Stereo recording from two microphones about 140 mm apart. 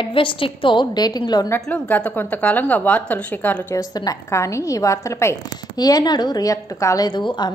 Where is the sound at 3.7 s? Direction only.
25° left (ahead or behind).